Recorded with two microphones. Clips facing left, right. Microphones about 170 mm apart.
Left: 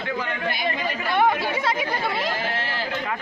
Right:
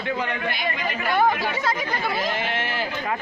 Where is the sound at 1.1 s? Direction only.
Centre (ahead or behind).